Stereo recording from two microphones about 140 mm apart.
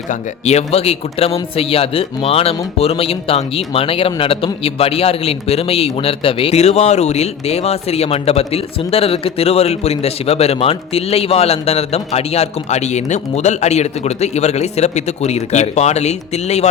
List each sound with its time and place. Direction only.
0.1 s a man's voice: 50° left (ahead or behind)